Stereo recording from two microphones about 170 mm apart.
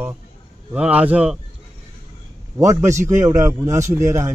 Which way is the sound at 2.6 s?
15° right (ahead or behind).